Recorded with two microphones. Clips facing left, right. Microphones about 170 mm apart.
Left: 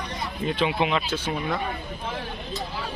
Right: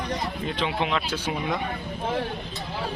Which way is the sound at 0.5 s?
5° left (ahead or behind).